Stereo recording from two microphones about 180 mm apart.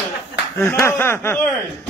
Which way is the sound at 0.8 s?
15° left (ahead or behind).